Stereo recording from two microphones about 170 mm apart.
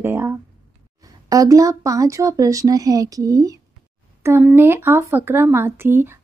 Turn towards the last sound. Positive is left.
turn(degrees=-15)  # may be behind; listen again after turning